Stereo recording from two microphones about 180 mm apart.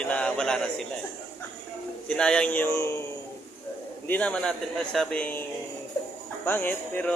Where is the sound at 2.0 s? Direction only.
5° left (ahead or behind).